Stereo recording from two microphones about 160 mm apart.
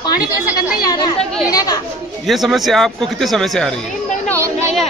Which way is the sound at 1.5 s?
25° left (ahead or behind).